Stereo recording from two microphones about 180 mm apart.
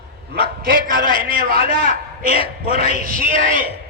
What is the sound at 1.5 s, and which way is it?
Speech, 35° left (ahead or behind).